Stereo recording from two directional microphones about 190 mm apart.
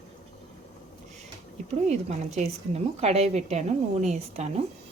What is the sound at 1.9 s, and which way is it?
A woman's voice, 35° right (ahead or behind).